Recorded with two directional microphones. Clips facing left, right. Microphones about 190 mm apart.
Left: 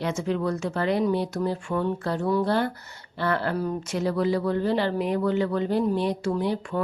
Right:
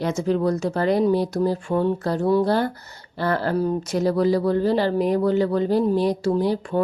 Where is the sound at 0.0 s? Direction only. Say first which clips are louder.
Right 5 dB; 40° right (ahead or behind).